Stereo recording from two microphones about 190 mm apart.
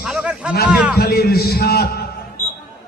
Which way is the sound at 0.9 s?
55° left (ahead or behind).